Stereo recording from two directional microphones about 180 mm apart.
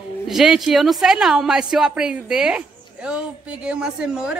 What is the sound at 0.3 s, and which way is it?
A woman's voice, centre (ahead or behind).